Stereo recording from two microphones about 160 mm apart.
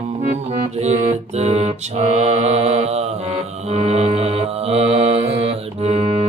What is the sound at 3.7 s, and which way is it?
Mantra, 45° right (ahead or behind).